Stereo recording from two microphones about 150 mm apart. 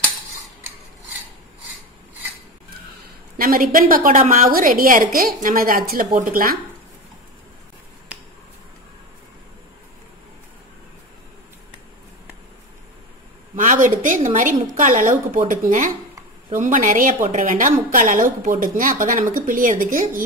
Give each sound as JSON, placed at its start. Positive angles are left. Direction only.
{"t": 3.3, "sound": "a woman's voice", "side_deg": -75}
{"t": 13.6, "sound": "a woman's voice", "side_deg": -60}